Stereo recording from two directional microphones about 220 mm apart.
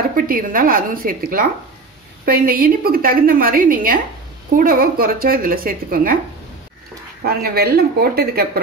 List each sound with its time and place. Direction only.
0.1 s a woman's voice: 40° right (ahead or behind)
7.2 s speech: 45° right (ahead or behind)